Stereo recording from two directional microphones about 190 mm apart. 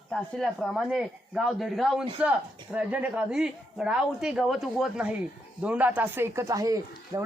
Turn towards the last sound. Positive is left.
turn(degrees=-15)  # may be behind; listen again after turning